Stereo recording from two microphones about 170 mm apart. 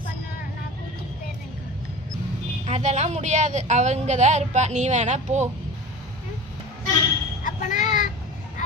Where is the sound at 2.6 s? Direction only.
40° right (ahead or behind).